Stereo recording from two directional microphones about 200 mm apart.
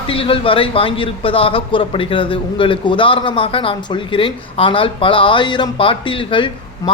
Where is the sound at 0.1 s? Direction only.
25° left (ahead or behind).